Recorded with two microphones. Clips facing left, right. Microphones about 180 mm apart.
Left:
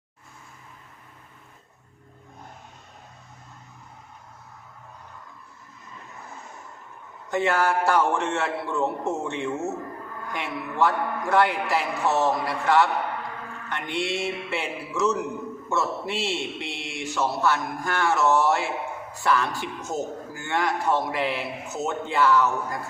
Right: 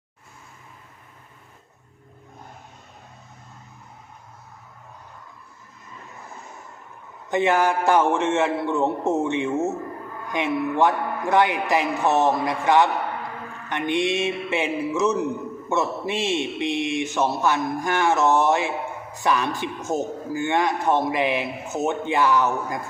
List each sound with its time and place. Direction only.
7.3 s a man's voice: 20° right (ahead or behind)
13.7 s music: 20° right (ahead or behind)
15.7 s a man's voice: 20° right (ahead or behind)